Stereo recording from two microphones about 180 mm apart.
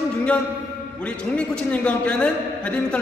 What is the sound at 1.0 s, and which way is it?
A man's voice, 5° left (ahead or behind).